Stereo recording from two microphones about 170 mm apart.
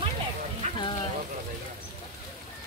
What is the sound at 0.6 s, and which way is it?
Music, 40° right (ahead or behind).